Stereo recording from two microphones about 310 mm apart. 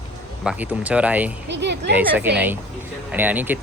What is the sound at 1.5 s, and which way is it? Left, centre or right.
Speech, right.